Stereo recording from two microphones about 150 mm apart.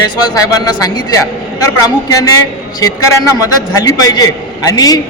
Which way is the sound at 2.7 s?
25° left (ahead or behind).